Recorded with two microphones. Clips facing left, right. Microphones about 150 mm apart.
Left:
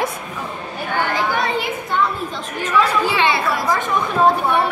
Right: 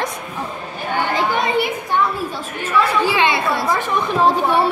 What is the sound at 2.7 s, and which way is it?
A woman's voice, 15° right (ahead or behind).